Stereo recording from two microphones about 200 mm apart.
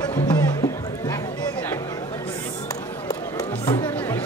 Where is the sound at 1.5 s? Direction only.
10° left (ahead or behind).